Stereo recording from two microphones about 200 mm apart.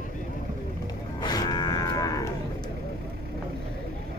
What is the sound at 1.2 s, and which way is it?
Livestock, 20° left (ahead or behind).